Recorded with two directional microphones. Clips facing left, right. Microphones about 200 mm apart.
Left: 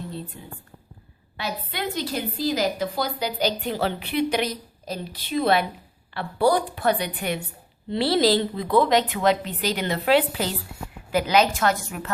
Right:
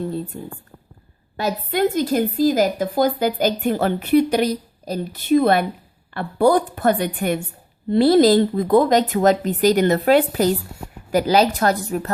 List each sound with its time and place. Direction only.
1.4 s a woman's voice: 45° right (ahead or behind)